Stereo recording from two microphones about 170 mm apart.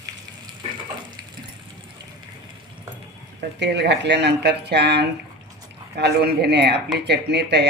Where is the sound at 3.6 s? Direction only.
90° right.